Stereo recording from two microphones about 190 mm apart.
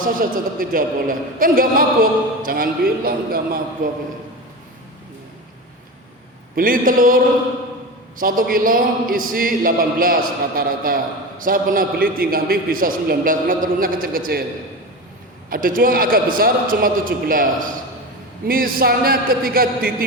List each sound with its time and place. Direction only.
0.0 s a man's voice: 50° right (ahead or behind)
6.6 s a man's voice: 45° right (ahead or behind)
8.2 s a man's voice: 50° right (ahead or behind)
15.4 s a man's voice: 45° right (ahead or behind)